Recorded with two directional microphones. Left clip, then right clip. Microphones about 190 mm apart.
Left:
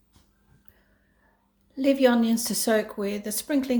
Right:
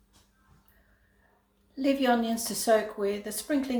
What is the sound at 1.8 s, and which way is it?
A woman's voice, 45° left (ahead or behind).